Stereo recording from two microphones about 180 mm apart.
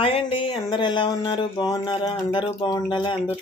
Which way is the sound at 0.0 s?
30° left (ahead or behind).